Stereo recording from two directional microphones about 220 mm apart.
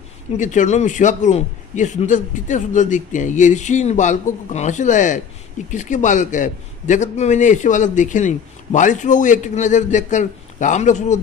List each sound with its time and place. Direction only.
0.4 s a man's voice: 35° left (ahead or behind)